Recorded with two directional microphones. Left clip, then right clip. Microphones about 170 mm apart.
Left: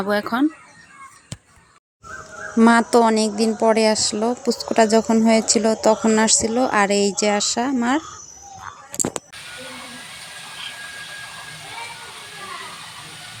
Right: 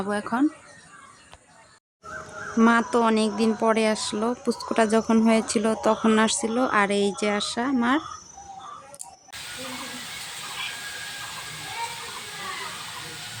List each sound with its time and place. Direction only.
0.0 s speech: 20° left (ahead or behind)
2.6 s speech: 30° left (ahead or behind)